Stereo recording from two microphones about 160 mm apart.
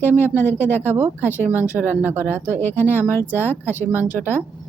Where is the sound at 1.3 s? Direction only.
15° left (ahead or behind).